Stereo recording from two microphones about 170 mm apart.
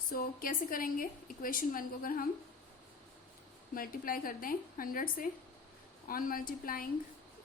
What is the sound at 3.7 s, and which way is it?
A woman's voice, 55° left (ahead or behind).